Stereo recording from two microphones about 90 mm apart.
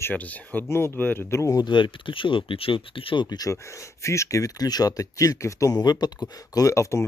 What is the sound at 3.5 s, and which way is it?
Speech, 35° left (ahead or behind).